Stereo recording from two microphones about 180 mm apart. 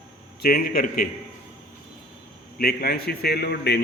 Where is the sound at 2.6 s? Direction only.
60° left (ahead or behind).